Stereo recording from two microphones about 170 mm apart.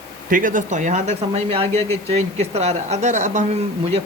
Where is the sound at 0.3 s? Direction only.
55° right (ahead or behind).